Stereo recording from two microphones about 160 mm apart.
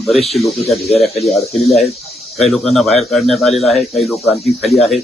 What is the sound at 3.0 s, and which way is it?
Speech, centre (ahead or behind).